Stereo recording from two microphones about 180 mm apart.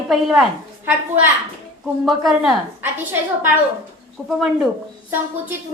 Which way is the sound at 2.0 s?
Centre (ahead or behind).